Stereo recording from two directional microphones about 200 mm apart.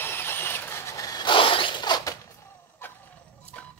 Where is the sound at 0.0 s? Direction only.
10° left (ahead or behind).